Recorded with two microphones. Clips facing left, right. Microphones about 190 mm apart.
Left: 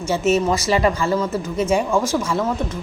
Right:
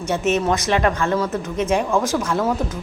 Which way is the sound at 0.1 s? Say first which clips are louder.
Left 1 dB; 5° left (ahead or behind).